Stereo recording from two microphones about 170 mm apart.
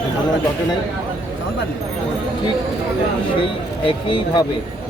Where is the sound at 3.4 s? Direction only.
30° left (ahead or behind).